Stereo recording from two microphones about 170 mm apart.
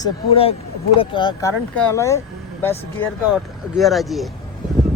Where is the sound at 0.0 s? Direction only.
35° left (ahead or behind); by 2.7 s 15° left (ahead or behind).